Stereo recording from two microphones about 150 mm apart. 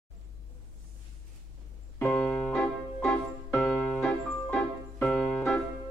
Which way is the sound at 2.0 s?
5° left (ahead or behind).